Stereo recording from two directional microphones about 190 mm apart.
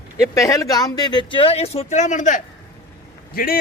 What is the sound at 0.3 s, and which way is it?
Speech, 15° left (ahead or behind).